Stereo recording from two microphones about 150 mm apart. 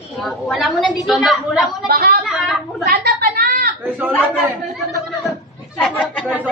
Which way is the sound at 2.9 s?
75° right (ahead or behind).